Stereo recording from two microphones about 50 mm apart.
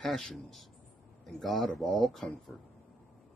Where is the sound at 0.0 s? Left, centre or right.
Centre.